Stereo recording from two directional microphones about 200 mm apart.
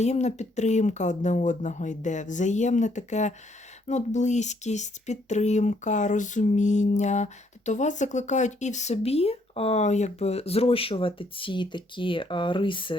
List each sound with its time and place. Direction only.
0.0 s speech: 35° left (ahead or behind)